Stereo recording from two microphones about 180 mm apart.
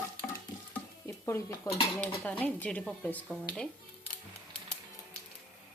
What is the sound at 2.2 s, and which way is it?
Speech, 10° left (ahead or behind).